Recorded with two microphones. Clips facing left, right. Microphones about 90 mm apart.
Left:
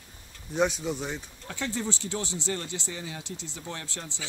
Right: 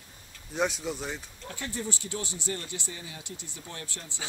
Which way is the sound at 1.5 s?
70° left (ahead or behind).